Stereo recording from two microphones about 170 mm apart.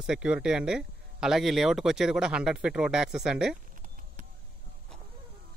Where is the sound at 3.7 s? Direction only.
50° right (ahead or behind).